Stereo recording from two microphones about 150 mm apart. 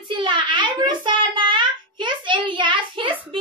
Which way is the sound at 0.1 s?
30° right (ahead or behind).